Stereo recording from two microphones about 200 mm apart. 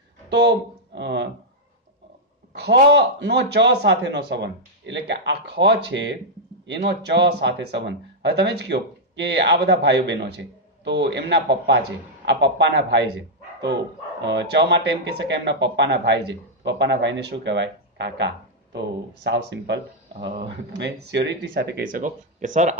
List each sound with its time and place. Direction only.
0.3 s speech: 60° right (ahead or behind)
2.5 s speech: 60° right (ahead or behind)
14.2 s speech: 60° right (ahead or behind); by 22.8 s 40° right (ahead or behind)